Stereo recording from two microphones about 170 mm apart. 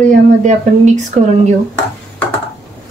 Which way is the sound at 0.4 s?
45° right (ahead or behind).